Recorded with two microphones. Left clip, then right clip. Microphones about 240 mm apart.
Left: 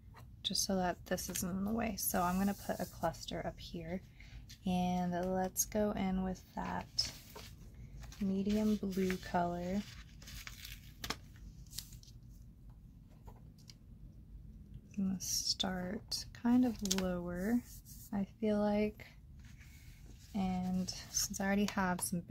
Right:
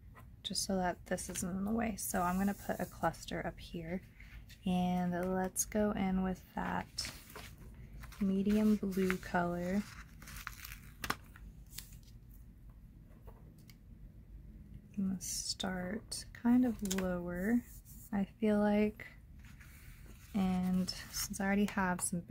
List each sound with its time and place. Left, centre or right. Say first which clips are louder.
0.4 s a woman's voice: left 1 dB; centre
8.0 s a sound: right 2 dB; right
8.5 s speech: right 2 dB; centre
9.8 s tearing: right 2 dB; right
15.0 s a woman's voice: left 2 dB; centre
18.1 s speech: right 2 dB; centre
20.3 s speech: right 2 dB; centre
21.4 s a woman's voice: right 2 dB; centre